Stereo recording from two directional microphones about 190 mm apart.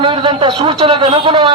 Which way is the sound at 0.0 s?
25° right (ahead or behind).